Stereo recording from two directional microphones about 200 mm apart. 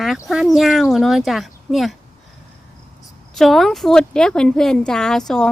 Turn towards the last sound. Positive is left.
turn(degrees=5)  # may be behind; listen again after turning